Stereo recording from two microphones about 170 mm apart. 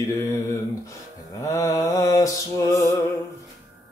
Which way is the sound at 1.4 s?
15° left (ahead or behind).